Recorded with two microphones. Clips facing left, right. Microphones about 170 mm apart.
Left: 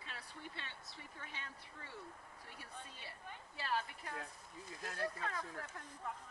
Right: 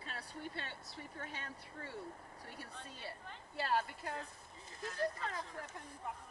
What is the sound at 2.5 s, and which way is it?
A woman's voice, 30° right (ahead or behind).